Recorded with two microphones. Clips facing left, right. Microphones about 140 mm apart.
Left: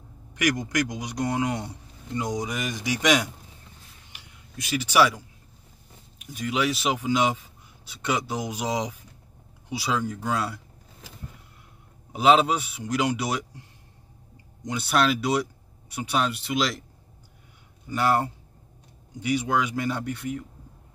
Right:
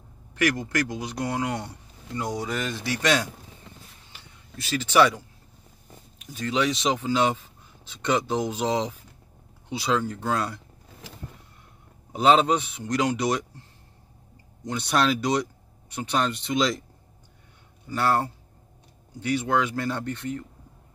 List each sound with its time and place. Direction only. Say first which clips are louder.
0.3 s speech: right 1 dB; 15° left (ahead or behind)
4.1 s a sound: right 1 dB; 15° left (ahead or behind)
6.1 s speech: right 1 dB; 10° left (ahead or behind)
12.1 s speech: even; 5° left (ahead or behind)
17.8 s speech: left 1 dB; 15° left (ahead or behind)